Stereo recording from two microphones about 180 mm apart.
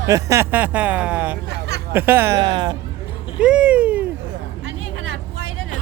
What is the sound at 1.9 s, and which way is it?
Speech, 10° right (ahead or behind).